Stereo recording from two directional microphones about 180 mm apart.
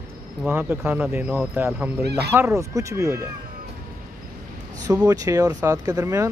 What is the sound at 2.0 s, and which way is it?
Speech, 65° right (ahead or behind).